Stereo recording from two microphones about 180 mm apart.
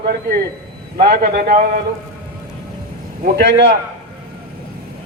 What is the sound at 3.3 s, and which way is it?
Speech, 75° right (ahead or behind).